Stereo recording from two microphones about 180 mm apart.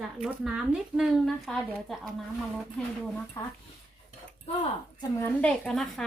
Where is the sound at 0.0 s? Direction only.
5° right (ahead or behind).